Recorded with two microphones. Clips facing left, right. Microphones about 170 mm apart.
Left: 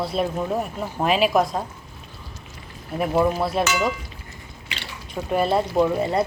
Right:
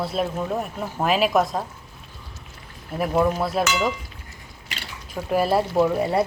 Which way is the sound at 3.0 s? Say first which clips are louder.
Left 1 dB; 5° left (ahead or behind).